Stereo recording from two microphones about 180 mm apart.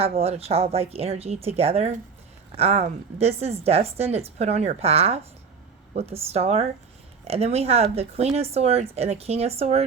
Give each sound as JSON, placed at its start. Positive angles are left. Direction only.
{"t": 0.0, "sound": "a woman's voice", "side_deg": -35}